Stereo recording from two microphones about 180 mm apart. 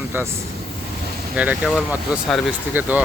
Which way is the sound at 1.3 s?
5° right (ahead or behind).